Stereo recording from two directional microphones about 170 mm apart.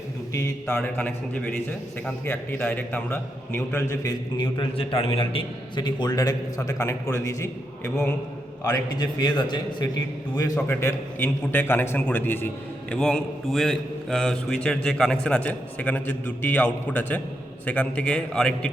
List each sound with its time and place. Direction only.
0.3 s a man's voice: 15° left (ahead or behind)
4.4 s a man's voice: 25° left (ahead or behind); by 18.7 s 5° left (ahead or behind)